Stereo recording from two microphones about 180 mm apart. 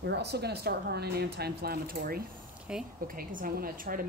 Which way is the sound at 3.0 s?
50° right (ahead or behind).